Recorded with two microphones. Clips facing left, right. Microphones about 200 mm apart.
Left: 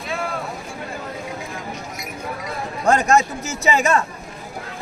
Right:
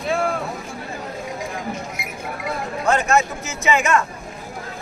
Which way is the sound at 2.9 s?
40° left (ahead or behind).